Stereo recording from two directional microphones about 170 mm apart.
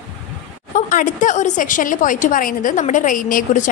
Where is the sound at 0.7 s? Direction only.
50° left (ahead or behind).